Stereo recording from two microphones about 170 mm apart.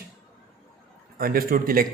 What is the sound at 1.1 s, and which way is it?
Speech, 60° right (ahead or behind).